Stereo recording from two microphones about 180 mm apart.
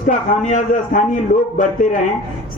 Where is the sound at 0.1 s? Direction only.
45° left (ahead or behind).